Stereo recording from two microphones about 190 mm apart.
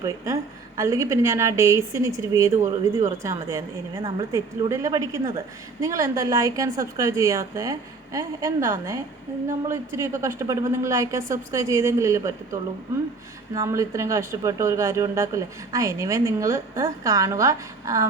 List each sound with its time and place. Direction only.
0.8 s speech: 15° right (ahead or behind)